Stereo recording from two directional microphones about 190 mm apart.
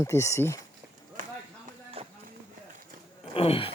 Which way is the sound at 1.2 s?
45° right (ahead or behind).